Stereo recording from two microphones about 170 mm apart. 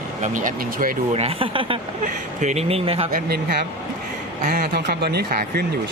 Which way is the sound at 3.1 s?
60° right (ahead or behind).